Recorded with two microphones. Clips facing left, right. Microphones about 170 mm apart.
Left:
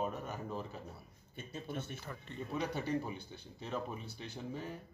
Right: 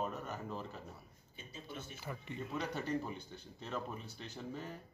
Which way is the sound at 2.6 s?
10° left (ahead or behind).